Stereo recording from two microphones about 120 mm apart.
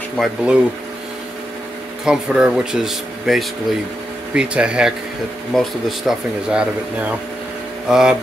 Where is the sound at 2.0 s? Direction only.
5° right (ahead or behind).